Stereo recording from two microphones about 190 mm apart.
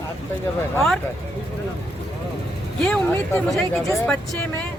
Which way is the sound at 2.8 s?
5° left (ahead or behind).